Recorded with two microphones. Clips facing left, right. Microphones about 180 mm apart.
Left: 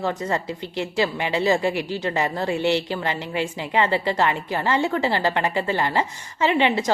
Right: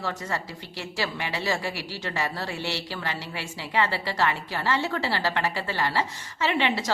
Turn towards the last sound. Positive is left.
turn(degrees=15)  # may be behind; listen again after turning